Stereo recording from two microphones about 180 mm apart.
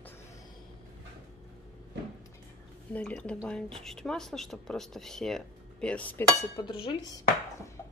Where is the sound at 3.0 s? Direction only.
5° left (ahead or behind).